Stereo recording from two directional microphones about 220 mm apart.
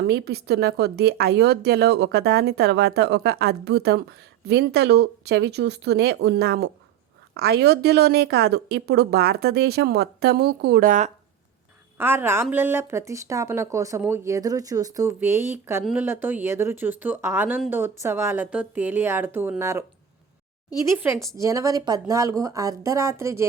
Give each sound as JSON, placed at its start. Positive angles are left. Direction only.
{"t": 0.1, "sound": "speech", "side_deg": -45}
{"t": 11.9, "sound": "speech", "side_deg": -10}
{"t": 20.8, "sound": "speech", "side_deg": -10}